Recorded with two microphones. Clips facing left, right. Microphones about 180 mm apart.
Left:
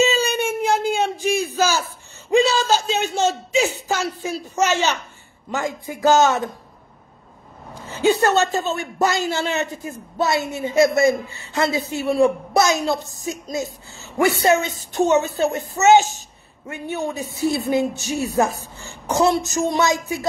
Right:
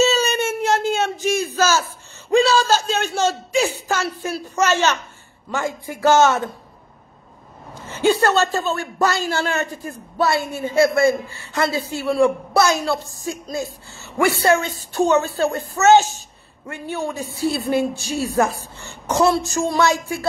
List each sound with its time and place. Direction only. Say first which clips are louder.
0.0 s a sound: right 1 dB; 15° left (ahead or behind)
5.9 s a man's voice: right 1 dB; 15° left (ahead or behind)
7.8 s a man's voice: even; 15° left (ahead or behind)